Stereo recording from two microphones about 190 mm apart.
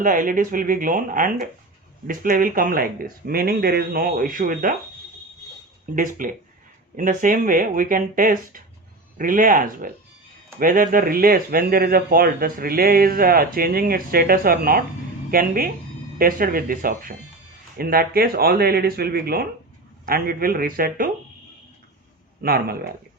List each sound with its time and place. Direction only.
0.0 s speech: 45° right (ahead or behind)
5.8 s speech: 45° right (ahead or behind)
22.4 s speech: 50° right (ahead or behind)